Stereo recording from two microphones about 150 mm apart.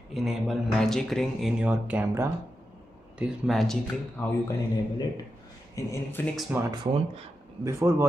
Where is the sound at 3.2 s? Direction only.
Centre (ahead or behind).